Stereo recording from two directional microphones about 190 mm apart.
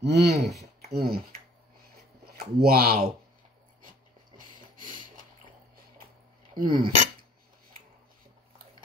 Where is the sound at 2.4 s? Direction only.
55° right (ahead or behind).